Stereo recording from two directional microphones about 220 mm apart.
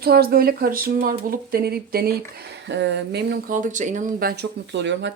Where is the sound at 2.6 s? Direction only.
55° right (ahead or behind).